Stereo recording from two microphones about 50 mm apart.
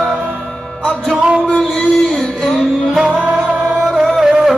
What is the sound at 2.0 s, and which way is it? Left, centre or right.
Music, centre.